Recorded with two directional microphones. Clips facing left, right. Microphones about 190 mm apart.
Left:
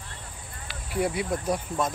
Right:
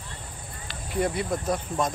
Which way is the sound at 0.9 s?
10° left (ahead or behind).